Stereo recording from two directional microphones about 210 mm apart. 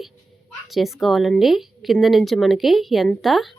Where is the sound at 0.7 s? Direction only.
Centre (ahead or behind).